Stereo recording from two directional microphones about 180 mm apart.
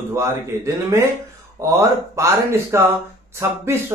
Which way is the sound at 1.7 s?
15° right (ahead or behind).